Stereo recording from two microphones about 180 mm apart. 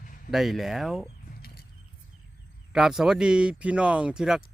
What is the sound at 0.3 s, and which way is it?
Speech, centre (ahead or behind).